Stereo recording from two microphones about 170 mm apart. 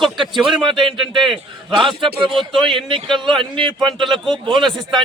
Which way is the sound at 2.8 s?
30° right (ahead or behind).